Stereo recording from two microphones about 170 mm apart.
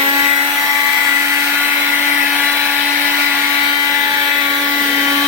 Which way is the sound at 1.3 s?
15° right (ahead or behind).